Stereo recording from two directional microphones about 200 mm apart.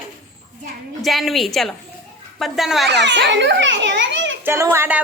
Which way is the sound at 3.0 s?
60° right (ahead or behind).